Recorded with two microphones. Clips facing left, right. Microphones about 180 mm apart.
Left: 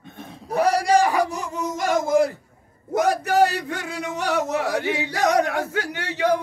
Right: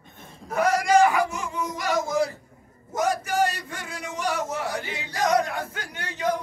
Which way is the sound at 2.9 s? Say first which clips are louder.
Left 5 dB; 65° left (ahead or behind).